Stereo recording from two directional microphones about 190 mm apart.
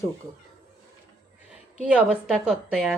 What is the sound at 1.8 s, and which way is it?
A woman's voice, 5° right (ahead or behind).